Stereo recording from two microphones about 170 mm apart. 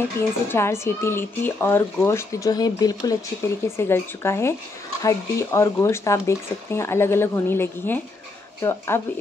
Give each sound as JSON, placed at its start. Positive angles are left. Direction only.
{"t": 0.5, "sound": "speech", "side_deg": 15}